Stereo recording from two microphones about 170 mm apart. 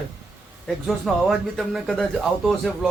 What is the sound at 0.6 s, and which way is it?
Speech, centre (ahead or behind).